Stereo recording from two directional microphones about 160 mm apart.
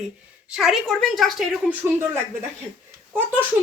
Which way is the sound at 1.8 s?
15° right (ahead or behind).